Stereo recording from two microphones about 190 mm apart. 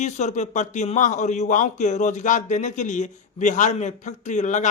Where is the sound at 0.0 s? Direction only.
40° left (ahead or behind).